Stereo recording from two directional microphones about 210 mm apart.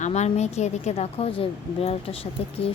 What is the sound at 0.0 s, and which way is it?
Speech, 30° left (ahead or behind).